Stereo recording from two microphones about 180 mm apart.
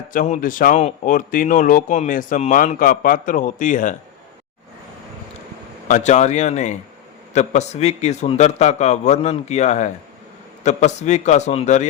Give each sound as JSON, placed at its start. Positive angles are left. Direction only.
{"t": 0.1, "sound": "speech", "side_deg": 50}
{"t": 5.9, "sound": "a man's voice", "side_deg": 40}